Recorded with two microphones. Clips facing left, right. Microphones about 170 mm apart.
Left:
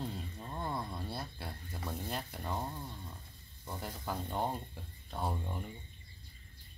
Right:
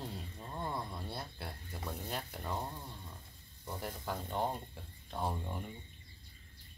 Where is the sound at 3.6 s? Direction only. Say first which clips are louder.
Even; centre (ahead or behind).